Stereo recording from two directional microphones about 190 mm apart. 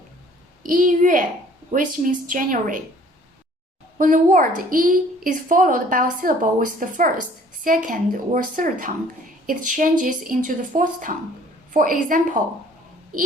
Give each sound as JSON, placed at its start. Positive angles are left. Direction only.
{"t": 0.6, "sound": "a woman's voice", "side_deg": -45}
{"t": 3.9, "sound": "a woman's voice", "side_deg": -45}